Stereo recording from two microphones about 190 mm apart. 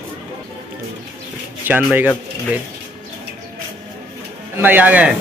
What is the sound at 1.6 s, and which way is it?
Speech, 5° right (ahead or behind).